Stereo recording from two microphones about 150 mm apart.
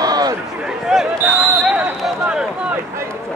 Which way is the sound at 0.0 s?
25° right (ahead or behind).